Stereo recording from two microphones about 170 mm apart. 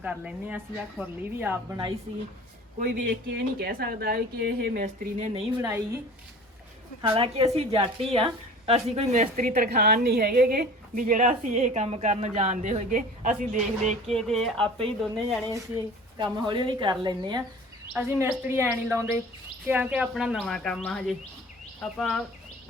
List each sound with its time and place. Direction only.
0.0 s speech: 5° right (ahead or behind)
2.7 s a woman's voice: 50° right (ahead or behind)
7.0 s a woman's voice: 30° right (ahead or behind)
9.2 s a woman's voice: 55° right (ahead or behind)
14.2 s speech: centre (ahead or behind)
16.1 s a woman's voice: 25° right (ahead or behind)
17.9 s speech: 15° right (ahead or behind); by 22.2 s 5° left (ahead or behind)